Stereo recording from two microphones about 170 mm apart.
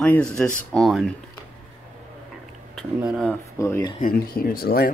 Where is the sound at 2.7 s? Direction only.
5° right (ahead or behind).